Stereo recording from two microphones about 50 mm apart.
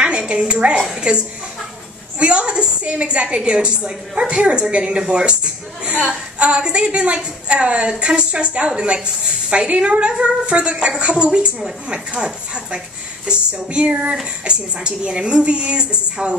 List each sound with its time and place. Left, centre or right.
0.0 s a woman's voice: centre
2.1 s a woman's voice: right
3.3 s a woman's voice: centre